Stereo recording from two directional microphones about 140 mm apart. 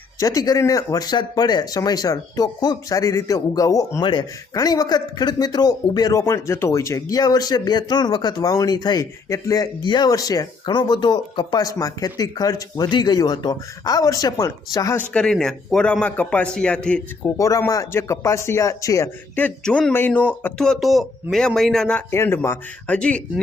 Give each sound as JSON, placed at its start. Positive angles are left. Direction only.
{"t": 0.2, "sound": "speech", "side_deg": 25}
{"t": 15.1, "sound": "a man's voice", "side_deg": 5}
{"t": 17.2, "sound": "speech", "side_deg": 25}
{"t": 19.4, "sound": "speech", "side_deg": 10}
{"t": 22.1, "sound": "a man's voice", "side_deg": 15}